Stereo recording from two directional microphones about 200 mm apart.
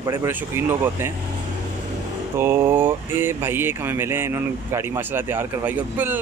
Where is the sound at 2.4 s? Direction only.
10° right (ahead or behind).